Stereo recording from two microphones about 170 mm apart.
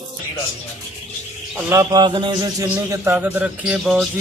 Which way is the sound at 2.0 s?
25° right (ahead or behind).